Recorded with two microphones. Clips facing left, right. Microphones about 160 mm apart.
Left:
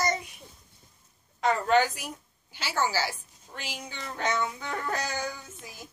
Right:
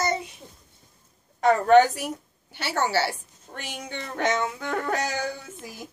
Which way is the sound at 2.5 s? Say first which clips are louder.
Right 4 dB; 65° right (ahead or behind).